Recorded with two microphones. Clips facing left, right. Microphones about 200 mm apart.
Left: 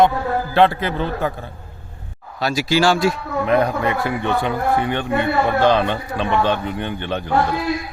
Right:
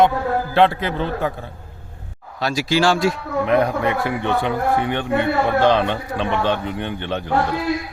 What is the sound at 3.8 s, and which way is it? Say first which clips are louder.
Speech: even; 75° right (ahead or behind).